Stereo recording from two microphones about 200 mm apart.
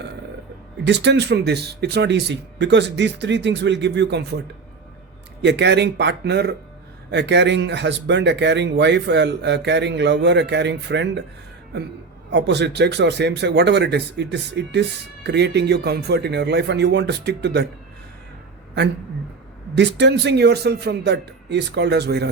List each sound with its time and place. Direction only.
0.9 s a man's voice: 60° right (ahead or behind)
5.4 s a man's voice: 60° right (ahead or behind)
12.3 s a man's voice: 60° right (ahead or behind)
19.7 s a man's voice: 60° right (ahead or behind)